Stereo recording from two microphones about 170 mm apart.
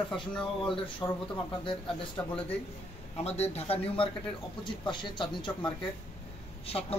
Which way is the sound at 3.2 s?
40° left (ahead or behind).